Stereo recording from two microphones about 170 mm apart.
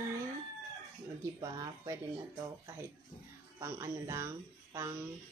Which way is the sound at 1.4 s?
15° right (ahead or behind).